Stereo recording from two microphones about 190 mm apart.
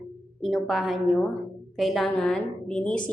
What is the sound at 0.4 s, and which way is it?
A woman's voice, centre (ahead or behind).